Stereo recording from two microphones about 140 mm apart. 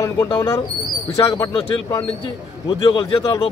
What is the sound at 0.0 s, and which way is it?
A man's voice, 25° left (ahead or behind).